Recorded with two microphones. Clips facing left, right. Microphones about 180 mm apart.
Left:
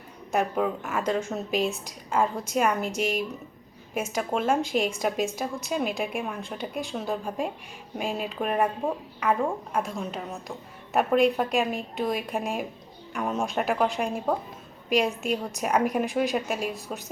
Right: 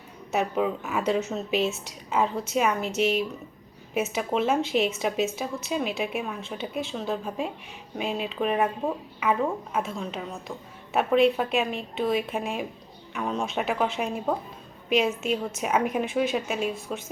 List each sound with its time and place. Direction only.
0.3 s a woman's voice: 5° right (ahead or behind)
3.0 s speech: 45° left (ahead or behind)
3.9 s a woman's voice: 5° right (ahead or behind)